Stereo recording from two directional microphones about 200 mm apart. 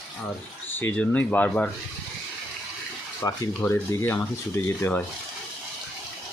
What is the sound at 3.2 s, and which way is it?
Speech, 10° left (ahead or behind).